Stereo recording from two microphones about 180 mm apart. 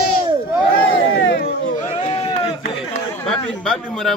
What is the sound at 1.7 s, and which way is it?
Sheep, 35° left (ahead or behind).